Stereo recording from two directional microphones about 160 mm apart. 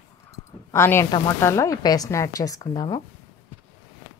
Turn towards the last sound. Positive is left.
turn(degrees=25)  # may be behind; listen again after turning